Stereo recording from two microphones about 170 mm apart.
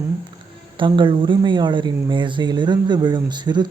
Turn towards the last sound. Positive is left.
turn(degrees=-25)  # may be behind; listen again after turning